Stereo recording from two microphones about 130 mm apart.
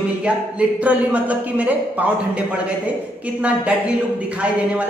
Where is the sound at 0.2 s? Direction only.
10° right (ahead or behind).